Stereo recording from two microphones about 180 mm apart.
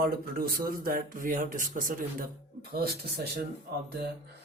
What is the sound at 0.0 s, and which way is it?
Speech, 55° right (ahead or behind).